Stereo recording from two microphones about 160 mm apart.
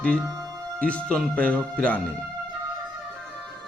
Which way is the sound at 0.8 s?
10° left (ahead or behind).